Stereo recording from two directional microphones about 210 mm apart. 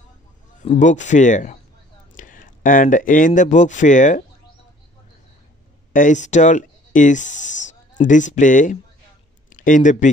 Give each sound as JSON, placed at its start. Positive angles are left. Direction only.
{"t": 0.6, "sound": "speech", "side_deg": 35}
{"t": 5.9, "sound": "speech", "side_deg": 35}